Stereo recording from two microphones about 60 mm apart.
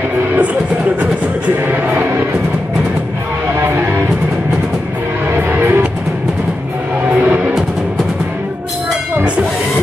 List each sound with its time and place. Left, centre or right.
1.7 s music: right
3.6 s music: right
5.3 s music: right
7.2 s music: right